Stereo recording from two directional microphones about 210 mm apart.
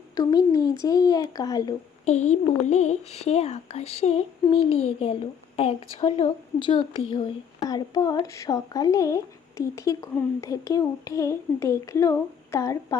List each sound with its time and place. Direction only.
0.1 s speech: 15° left (ahead or behind)
2.0 s speech: 35° left (ahead or behind); by 13.0 s 15° left (ahead or behind)